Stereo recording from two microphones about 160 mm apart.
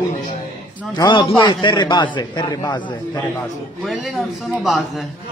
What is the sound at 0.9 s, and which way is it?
A man's voice, 30° left (ahead or behind).